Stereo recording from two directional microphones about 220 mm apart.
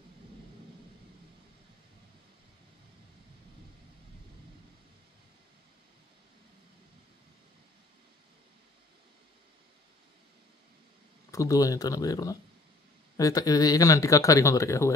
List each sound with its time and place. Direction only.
11.3 s speech: 15° left (ahead or behind)